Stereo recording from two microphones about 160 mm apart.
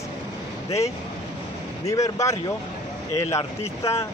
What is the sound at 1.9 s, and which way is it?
Speech, 20° left (ahead or behind).